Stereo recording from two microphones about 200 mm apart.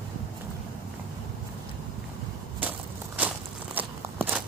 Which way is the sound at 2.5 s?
10° right (ahead or behind).